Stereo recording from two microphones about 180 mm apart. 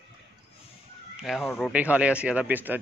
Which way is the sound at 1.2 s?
Centre (ahead or behind).